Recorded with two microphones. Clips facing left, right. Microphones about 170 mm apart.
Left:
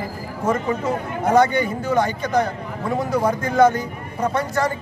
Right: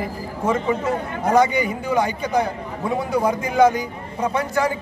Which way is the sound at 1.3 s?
10° right (ahead or behind).